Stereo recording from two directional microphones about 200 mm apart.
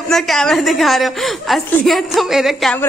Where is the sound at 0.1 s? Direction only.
Centre (ahead or behind).